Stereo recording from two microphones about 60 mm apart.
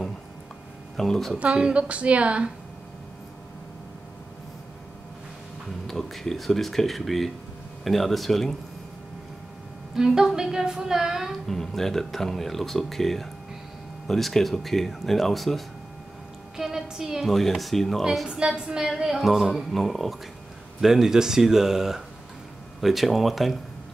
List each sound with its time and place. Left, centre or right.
0.9 s a woman's voice: centre
1.4 s a woman's voice: centre
5.9 s speech: centre
9.9 s a woman's voice: centre
11.4 s a woman's voice: centre
17.3 s speech: centre
18.2 s a woman's voice: centre